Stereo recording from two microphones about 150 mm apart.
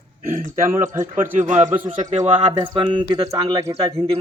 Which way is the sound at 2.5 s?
35° right (ahead or behind).